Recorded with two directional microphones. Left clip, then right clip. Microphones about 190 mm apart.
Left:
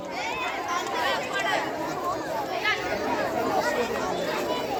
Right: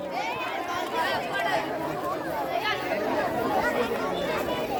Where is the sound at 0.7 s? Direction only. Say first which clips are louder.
Left 1 dB; 50° right (ahead or behind).